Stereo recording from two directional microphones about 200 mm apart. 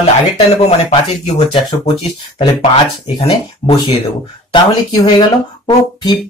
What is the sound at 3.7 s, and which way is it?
Speech, 20° left (ahead or behind).